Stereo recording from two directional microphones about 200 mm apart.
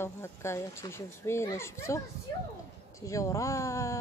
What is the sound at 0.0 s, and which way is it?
Speech, 15° left (ahead or behind).